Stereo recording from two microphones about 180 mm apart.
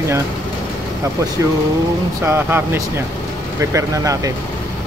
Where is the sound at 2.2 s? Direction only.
10° right (ahead or behind).